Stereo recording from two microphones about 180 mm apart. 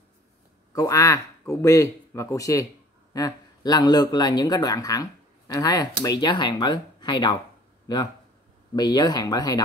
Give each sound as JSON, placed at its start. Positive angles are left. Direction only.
{"t": 0.7, "sound": "speech", "side_deg": 20}
{"t": 8.7, "sound": "speech", "side_deg": 20}